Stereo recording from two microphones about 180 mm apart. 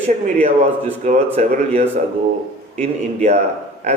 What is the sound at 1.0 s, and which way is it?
A man's voice, 40° right (ahead or behind).